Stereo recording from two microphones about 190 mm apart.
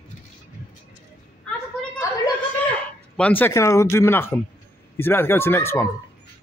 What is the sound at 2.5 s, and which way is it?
Speech, 5° left (ahead or behind).